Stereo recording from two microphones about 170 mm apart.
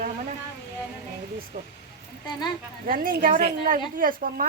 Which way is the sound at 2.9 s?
55° right (ahead or behind).